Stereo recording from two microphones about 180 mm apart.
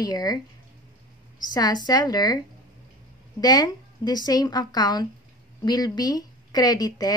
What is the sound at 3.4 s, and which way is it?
Speech, 20° left (ahead or behind).